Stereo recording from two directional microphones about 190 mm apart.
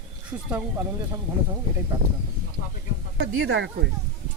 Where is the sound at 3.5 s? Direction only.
65° right (ahead or behind).